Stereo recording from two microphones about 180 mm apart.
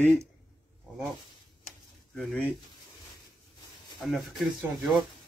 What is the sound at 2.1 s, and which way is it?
Speech, 5° left (ahead or behind).